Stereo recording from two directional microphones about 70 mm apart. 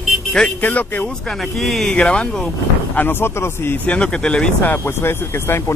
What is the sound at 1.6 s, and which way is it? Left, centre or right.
Speech, centre.